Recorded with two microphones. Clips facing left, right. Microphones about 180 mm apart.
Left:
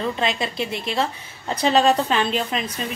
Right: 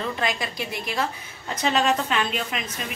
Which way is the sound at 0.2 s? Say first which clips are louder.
Left 4 dB; 25° left (ahead or behind).